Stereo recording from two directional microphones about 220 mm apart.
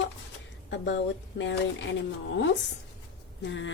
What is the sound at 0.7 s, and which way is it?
Speech, 55° left (ahead or behind).